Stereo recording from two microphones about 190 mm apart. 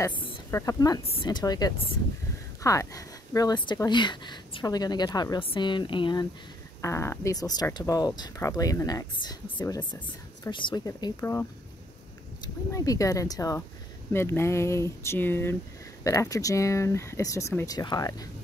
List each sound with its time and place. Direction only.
0.0 s speech: 25° left (ahead or behind)
6.8 s speech: 15° left (ahead or behind)
12.7 s speech: 15° left (ahead or behind)